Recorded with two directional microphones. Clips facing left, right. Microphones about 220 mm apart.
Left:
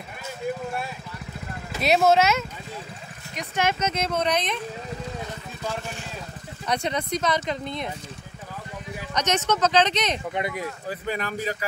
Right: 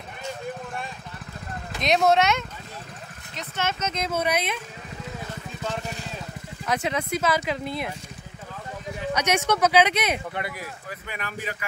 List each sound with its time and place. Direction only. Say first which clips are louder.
1.7 s speech: left 1 dB; 5° left (ahead or behind)
4.1 s speech: right 2 dB; 10° right (ahead or behind)
6.6 s speech: even; 5° right (ahead or behind)
9.1 s speech: even; 10° right (ahead or behind)
10.3 s speech: left 4 dB; 20° left (ahead or behind)
10.9 s speech: left 9 dB; 35° left (ahead or behind)